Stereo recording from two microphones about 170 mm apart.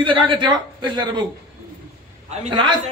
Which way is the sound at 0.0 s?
30° right (ahead or behind).